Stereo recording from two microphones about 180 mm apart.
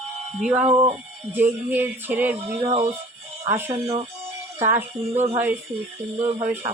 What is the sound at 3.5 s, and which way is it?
Music, 15° right (ahead or behind).